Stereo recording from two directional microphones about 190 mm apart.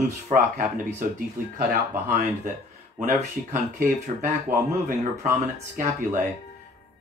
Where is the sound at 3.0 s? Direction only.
40° right (ahead or behind).